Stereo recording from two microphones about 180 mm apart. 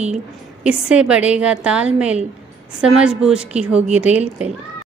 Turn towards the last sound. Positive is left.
turn(degrees=-5)  # may be behind; listen again after turning